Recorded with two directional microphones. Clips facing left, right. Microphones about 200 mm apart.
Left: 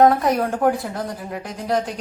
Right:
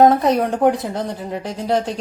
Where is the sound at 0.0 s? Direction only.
25° right (ahead or behind).